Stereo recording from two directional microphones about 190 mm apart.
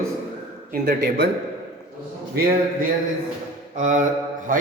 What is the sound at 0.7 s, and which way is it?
Speech, 55° right (ahead or behind).